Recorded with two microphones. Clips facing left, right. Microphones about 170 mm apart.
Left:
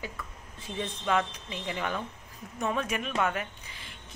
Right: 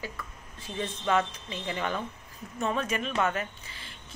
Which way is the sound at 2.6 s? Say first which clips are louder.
Right 1 dB; 10° left (ahead or behind).